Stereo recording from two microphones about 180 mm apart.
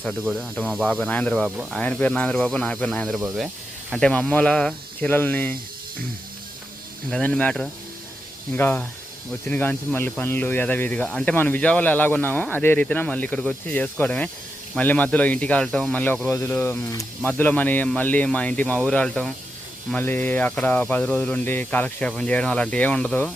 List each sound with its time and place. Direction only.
0.0 s speech: centre (ahead or behind)
7.1 s speech: 5° left (ahead or behind)